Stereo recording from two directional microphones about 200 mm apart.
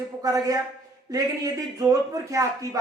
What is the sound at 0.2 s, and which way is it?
A man's voice, 15° right (ahead or behind).